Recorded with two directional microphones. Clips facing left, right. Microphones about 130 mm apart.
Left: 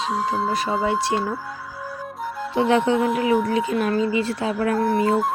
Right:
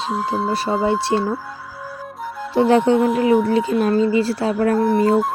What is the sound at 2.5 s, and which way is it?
Speech, 35° right (ahead or behind).